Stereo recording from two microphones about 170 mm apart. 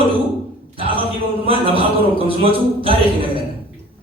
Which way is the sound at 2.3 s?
35° right (ahead or behind).